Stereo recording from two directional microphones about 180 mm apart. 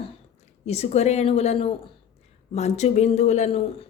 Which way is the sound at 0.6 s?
35° left (ahead or behind).